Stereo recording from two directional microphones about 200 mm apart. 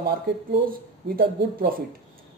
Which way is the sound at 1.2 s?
50° right (ahead or behind).